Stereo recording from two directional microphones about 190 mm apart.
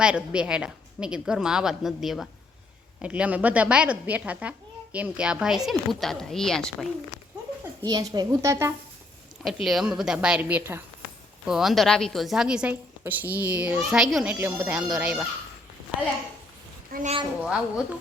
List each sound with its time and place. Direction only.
0.0 s a woman's voice: 5° right (ahead or behind)
7.9 s a woman's voice: 20° right (ahead or behind)
9.6 s a woman's voice: centre (ahead or behind)
16.9 s a woman's voice: 40° right (ahead or behind)
17.4 s a woman's voice: 5° right (ahead or behind)